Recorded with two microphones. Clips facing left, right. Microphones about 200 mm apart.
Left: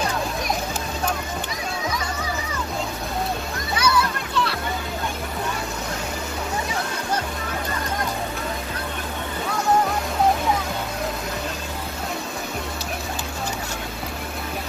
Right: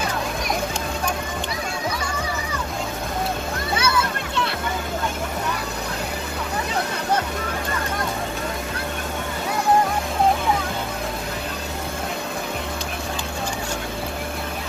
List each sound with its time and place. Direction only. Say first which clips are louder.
3.7 s children playing: left 1 dB; 25° right (ahead or behind)